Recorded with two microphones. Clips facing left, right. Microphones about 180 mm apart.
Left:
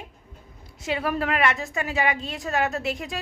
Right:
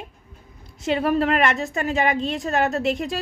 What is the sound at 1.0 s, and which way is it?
A woman's voice, 35° right (ahead or behind).